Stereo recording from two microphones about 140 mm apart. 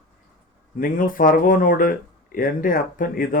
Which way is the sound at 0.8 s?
80° left.